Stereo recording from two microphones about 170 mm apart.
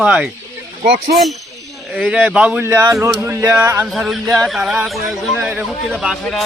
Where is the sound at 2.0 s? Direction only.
10° right (ahead or behind).